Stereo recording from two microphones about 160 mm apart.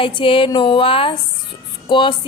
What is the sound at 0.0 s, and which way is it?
Speech, 35° left (ahead or behind).